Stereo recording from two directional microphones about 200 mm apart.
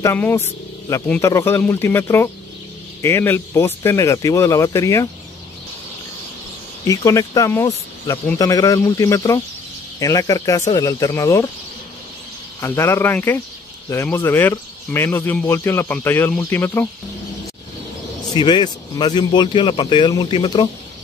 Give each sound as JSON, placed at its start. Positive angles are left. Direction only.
{"t": 0.0, "sound": "speech", "side_deg": 10}
{"t": 6.9, "sound": "speech", "side_deg": 15}
{"t": 12.5, "sound": "speech", "side_deg": 15}
{"t": 18.3, "sound": "speech", "side_deg": 20}